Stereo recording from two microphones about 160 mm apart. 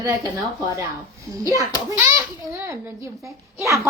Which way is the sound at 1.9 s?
15° right (ahead or behind).